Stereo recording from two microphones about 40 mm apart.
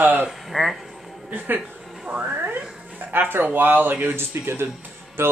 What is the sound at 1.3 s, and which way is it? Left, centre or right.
Speech, right.